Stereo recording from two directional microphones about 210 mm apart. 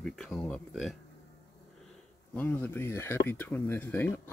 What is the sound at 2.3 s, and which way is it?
Speech, 10° left (ahead or behind).